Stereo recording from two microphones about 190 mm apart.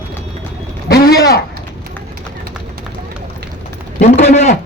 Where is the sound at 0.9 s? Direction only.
55° left (ahead or behind).